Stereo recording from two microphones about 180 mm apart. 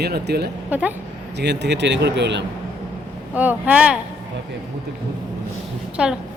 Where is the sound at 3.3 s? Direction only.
10° right (ahead or behind).